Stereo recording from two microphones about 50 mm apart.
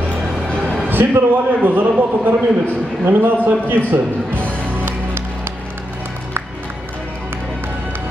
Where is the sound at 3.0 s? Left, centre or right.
Right.